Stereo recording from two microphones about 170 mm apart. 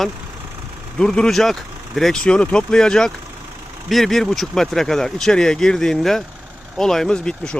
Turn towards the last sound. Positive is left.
turn(degrees=5)  # may be behind; listen again after turning